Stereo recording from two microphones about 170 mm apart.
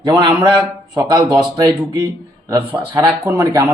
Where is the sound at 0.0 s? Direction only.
25° right (ahead or behind).